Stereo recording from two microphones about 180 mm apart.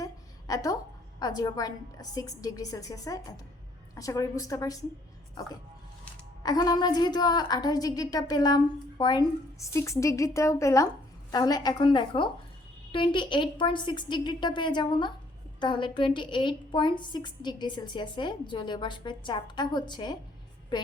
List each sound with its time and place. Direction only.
0.0 s a sound: 20° left (ahead or behind)
1.2 s a woman's voice: 20° left (ahead or behind)
6.4 s a woman's voice: 20° left (ahead or behind)